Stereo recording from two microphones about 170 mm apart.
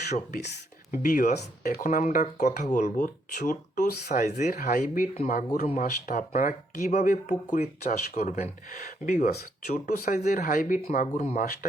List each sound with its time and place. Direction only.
0.9 s speech: 50° left (ahead or behind)